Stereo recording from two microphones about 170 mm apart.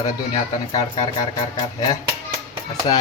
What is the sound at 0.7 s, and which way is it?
Speech, 20° left (ahead or behind).